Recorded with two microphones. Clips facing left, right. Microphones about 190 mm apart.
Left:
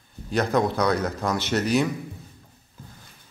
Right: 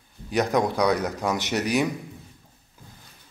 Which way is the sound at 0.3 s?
15° right (ahead or behind).